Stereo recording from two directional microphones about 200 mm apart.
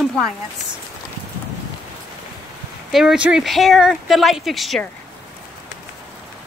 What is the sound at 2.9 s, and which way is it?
Speech, centre (ahead or behind).